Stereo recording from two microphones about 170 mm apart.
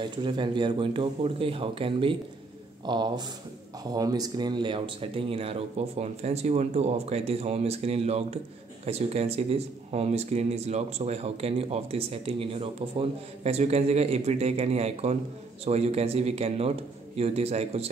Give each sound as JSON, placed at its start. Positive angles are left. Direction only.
{"t": 0.0, "sound": "speech", "side_deg": -30}